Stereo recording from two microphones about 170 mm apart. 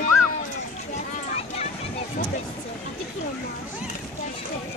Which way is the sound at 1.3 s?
40° left (ahead or behind).